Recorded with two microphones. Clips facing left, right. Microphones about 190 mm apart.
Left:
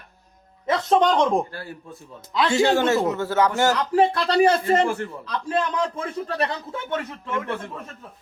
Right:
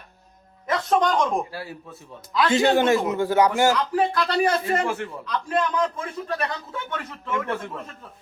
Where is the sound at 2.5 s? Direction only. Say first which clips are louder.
Even; 20° right (ahead or behind).